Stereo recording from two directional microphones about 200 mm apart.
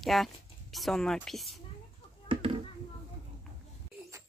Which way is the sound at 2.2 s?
25° right (ahead or behind).